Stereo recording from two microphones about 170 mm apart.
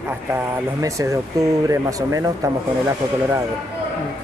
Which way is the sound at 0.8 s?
20° right (ahead or behind).